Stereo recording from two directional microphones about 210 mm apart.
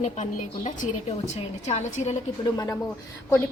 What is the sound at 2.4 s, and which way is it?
Speech, 20° left (ahead or behind).